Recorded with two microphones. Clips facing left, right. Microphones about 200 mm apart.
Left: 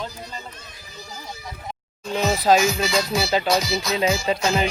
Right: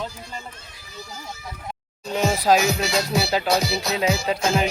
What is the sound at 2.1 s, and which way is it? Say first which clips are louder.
Speech: left 1 dB; 10° right (ahead or behind).